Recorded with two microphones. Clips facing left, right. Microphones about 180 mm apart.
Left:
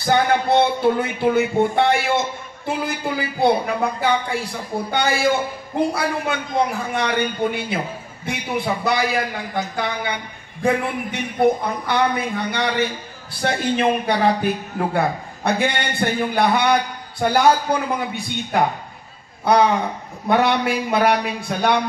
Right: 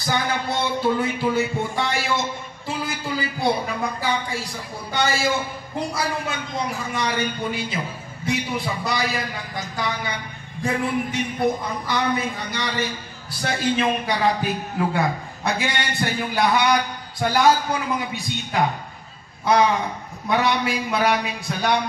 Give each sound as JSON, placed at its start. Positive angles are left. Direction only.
{"t": 0.0, "sound": "music", "side_deg": 60}
{"t": 20.2, "sound": "music", "side_deg": 55}